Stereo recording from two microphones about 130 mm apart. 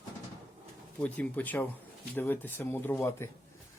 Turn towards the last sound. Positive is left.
turn(degrees=20)  # may be behind; listen again after turning